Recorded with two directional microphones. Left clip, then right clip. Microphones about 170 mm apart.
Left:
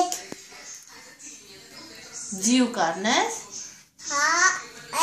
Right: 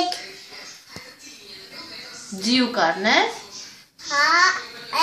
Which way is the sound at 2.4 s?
Centre (ahead or behind).